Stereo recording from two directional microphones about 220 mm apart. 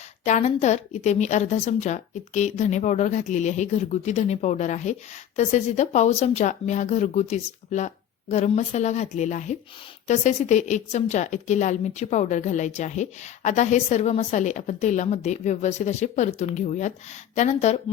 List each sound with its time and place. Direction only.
0.3 s a woman's voice: 30° left (ahead or behind)